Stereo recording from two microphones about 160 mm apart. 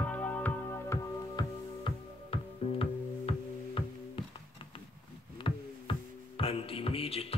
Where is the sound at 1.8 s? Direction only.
35° left (ahead or behind).